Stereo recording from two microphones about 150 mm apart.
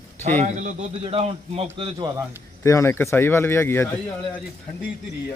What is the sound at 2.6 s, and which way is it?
Speech, 20° left (ahead or behind).